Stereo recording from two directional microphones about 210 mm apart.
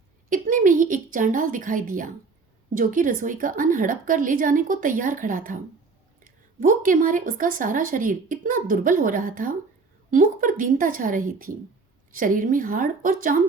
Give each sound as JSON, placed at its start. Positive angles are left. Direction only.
{"t": 0.3, "sound": "speech", "side_deg": -40}